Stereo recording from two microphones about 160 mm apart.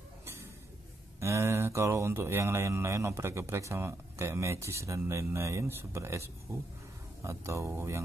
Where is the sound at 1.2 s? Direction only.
15° right (ahead or behind).